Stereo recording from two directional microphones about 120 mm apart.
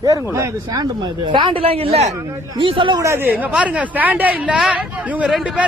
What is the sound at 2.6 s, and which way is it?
Speech, 45° right (ahead or behind).